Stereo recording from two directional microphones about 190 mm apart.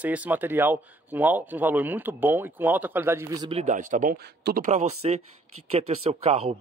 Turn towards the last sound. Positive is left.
turn(degrees=-30)  # may be behind; listen again after turning